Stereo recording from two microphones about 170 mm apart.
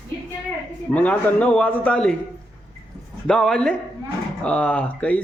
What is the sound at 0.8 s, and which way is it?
A man's voice, 10° left (ahead or behind).